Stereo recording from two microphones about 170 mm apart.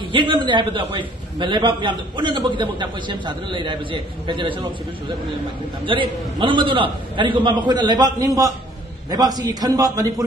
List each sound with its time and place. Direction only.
0.1 s a man's voice: 30° right (ahead or behind)
5.9 s a man's voice: 30° right (ahead or behind)